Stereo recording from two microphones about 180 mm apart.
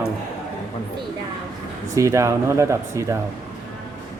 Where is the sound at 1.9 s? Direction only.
15° right (ahead or behind).